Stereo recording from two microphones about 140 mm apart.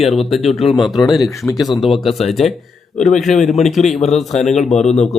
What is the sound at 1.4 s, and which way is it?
Speech, 25° left (ahead or behind).